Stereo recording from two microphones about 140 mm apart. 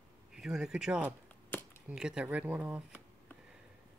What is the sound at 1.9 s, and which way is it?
Speech, 5° right (ahead or behind).